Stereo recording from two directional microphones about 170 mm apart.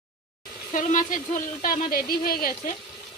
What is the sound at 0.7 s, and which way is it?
Speech, 50° left (ahead or behind).